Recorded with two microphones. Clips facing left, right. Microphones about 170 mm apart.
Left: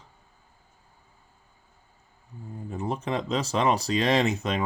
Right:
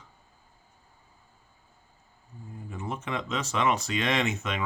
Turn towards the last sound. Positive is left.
turn(degrees=35)  # may be behind; listen again after turning